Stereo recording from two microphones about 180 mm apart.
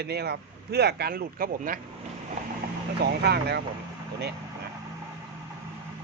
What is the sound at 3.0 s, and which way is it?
Speech, 65° right (ahead or behind).